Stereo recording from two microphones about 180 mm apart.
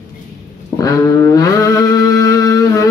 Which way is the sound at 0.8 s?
20° left (ahead or behind).